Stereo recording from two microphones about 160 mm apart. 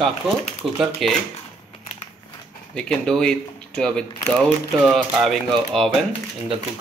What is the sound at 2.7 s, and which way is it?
Speech, 5° left (ahead or behind).